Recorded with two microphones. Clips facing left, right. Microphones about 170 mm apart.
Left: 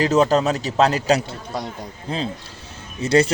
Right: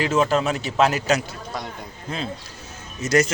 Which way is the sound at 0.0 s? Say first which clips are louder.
Left 3 dB; 40° left (ahead or behind).